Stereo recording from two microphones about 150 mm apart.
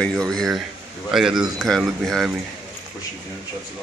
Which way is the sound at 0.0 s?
5° left (ahead or behind).